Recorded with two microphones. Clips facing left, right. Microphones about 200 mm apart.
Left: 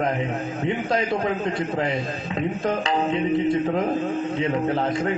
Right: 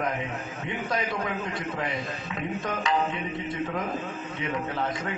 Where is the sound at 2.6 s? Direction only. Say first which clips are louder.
Left 3 dB; 30° left (ahead or behind).